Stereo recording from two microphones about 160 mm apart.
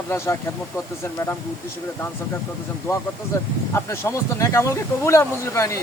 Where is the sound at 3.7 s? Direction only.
15° left (ahead or behind).